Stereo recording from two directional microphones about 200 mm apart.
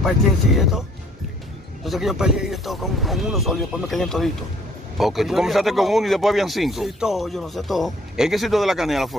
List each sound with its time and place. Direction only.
0.6 s speech: centre (ahead or behind)
1.9 s speech: centre (ahead or behind)